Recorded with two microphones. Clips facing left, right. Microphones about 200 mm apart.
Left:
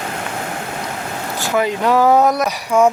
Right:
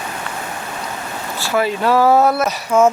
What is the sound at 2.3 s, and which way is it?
Speech, 15° left (ahead or behind).